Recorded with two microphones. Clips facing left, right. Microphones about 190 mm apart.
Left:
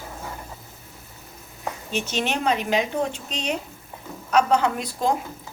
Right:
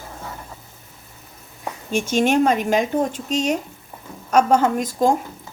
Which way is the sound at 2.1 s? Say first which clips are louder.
Right 8 dB; 45° right (ahead or behind).